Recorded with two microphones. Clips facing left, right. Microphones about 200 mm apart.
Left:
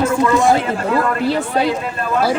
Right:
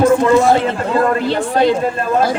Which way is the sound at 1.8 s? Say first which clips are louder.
Right 5 dB; 30° right (ahead or behind).